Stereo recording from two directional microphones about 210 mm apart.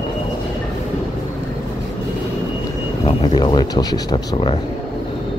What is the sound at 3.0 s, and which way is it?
Speech, 20° left (ahead or behind).